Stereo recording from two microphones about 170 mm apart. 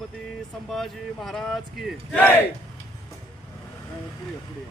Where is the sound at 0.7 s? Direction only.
Centre (ahead or behind).